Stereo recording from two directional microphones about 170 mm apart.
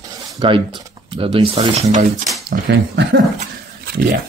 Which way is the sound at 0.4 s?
30° right (ahead or behind).